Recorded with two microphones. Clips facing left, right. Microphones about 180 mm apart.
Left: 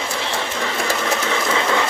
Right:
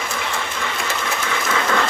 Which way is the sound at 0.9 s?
30° left (ahead or behind).